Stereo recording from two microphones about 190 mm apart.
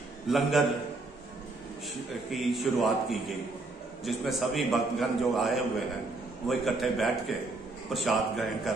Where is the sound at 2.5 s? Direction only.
Centre (ahead or behind).